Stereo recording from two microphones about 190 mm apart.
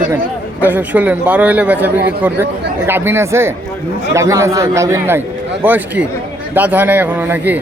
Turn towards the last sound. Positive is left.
turn(degrees=-10)  # may be behind; listen again after turning